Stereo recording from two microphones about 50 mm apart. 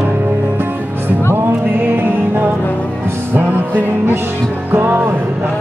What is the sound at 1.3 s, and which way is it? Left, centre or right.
Music, right.